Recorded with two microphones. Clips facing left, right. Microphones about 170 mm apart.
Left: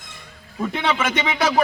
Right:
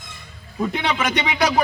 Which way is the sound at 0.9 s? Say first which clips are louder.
Even; 15° right (ahead or behind).